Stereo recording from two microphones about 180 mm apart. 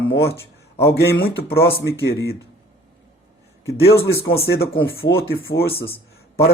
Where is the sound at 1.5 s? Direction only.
60° left (ahead or behind).